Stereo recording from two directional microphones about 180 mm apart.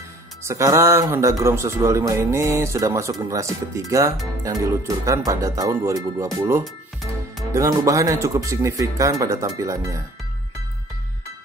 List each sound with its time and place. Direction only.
0.4 s speech: 15° right (ahead or behind)
6.6 s music: centre (ahead or behind)
7.5 s speech: 15° right (ahead or behind)